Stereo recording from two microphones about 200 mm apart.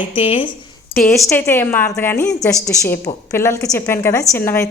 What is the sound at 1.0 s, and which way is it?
A woman's voice, 10° left (ahead or behind).